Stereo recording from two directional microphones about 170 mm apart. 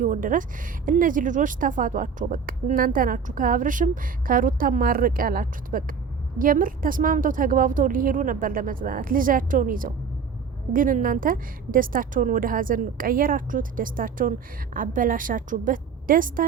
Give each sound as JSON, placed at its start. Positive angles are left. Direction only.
{"t": 0.0, "sound": "a woman's voice", "side_deg": -50}